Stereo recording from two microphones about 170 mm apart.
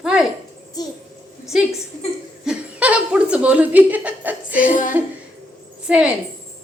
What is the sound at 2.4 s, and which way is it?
Chuckle, 5° right (ahead or behind).